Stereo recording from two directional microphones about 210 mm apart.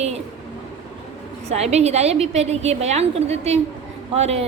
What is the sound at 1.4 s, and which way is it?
A woman's voice, 30° right (ahead or behind).